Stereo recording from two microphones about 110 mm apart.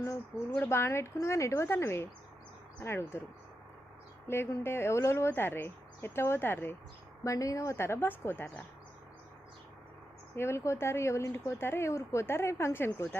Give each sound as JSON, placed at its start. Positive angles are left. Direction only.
{"t": 0.5, "sound": "speech", "side_deg": 20}
{"t": 4.3, "sound": "speech", "side_deg": 20}
{"t": 10.3, "sound": "speech", "side_deg": 25}